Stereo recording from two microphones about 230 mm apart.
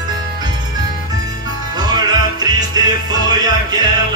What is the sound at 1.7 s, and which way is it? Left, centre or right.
Music, centre.